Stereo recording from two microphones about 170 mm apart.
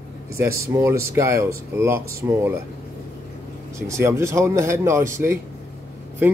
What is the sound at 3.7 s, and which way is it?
Speech, 15° right (ahead or behind).